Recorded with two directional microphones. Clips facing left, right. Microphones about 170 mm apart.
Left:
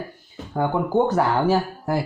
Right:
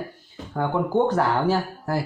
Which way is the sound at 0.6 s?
10° left (ahead or behind).